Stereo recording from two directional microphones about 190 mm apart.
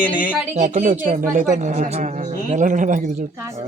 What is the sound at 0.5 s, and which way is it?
A man's voice, 40° right (ahead or behind).